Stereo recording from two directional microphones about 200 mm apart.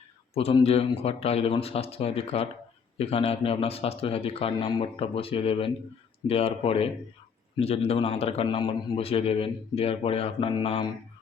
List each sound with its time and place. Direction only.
0.3 s a man's voice: 30° left (ahead or behind)